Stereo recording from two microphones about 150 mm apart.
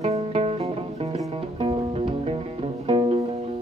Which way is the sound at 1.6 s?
40° right (ahead or behind).